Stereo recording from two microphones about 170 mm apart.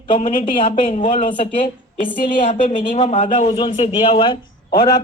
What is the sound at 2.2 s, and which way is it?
Speech, 55° left (ahead or behind).